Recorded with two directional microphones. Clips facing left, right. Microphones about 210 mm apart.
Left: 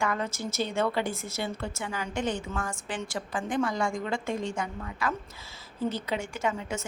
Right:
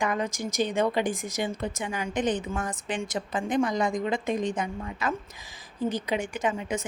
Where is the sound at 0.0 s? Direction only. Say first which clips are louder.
Right 2 dB; 15° right (ahead or behind).